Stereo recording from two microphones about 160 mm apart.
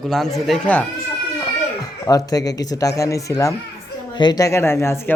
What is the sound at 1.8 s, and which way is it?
Speech, 25° left (ahead or behind).